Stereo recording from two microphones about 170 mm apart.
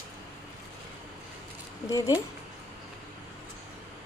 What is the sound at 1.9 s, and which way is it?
Speech, 20° left (ahead or behind).